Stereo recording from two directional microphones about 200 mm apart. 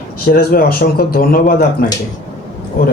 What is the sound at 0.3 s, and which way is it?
Speech, 50° left (ahead or behind).